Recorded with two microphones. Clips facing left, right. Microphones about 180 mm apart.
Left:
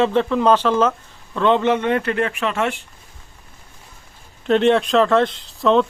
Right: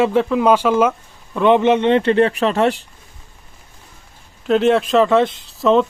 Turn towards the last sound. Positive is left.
turn(degrees=0)  # may be behind; listen again after turning